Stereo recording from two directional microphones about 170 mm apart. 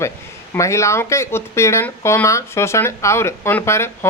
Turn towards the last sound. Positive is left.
turn(degrees=15)  # may be behind; listen again after turning